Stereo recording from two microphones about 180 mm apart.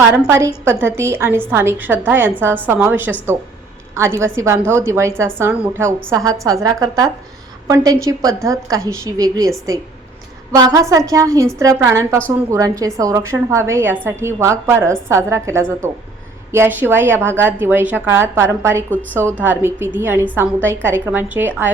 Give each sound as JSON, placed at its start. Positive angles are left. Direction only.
{"t": 0.2, "sound": "a woman's voice", "side_deg": -15}
{"t": 10.5, "sound": "a woman's voice", "side_deg": -20}